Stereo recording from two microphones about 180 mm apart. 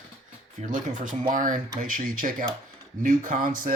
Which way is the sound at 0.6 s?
45° right (ahead or behind).